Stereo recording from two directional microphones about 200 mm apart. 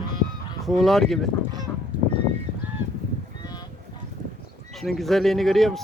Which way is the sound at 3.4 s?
20° left (ahead or behind).